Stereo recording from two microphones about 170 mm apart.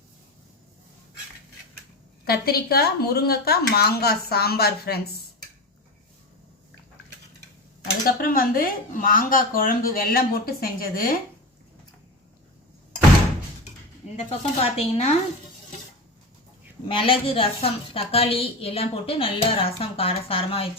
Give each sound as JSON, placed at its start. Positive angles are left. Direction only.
{"t": 2.2, "sound": "speech", "side_deg": 65}
{"t": 8.0, "sound": "speech", "side_deg": 55}
{"t": 14.3, "sound": "a woman's voice", "side_deg": 35}
{"t": 17.0, "sound": "a woman's voice", "side_deg": 35}